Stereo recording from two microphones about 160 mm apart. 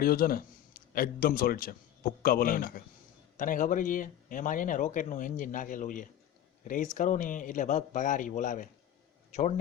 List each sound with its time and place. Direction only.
0.0 s a man's voice: 65° left (ahead or behind); by 9.5 s 50° left (ahead or behind)